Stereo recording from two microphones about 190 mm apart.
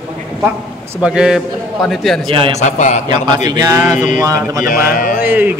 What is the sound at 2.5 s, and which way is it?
Speech, 40° left (ahead or behind).